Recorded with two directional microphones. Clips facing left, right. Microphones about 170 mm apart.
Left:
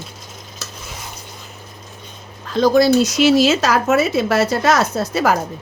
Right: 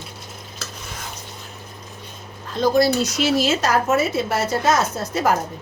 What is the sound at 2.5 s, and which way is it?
Speech, 90° left.